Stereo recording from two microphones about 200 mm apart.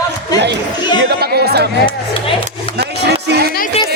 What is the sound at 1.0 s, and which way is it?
Music, 50° right (ahead or behind).